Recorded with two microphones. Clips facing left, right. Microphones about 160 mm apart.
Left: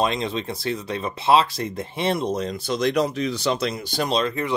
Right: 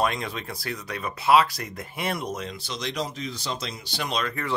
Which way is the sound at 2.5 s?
50° left (ahead or behind).